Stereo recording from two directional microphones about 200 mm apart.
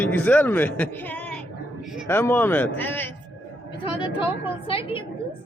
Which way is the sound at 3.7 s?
25° left (ahead or behind).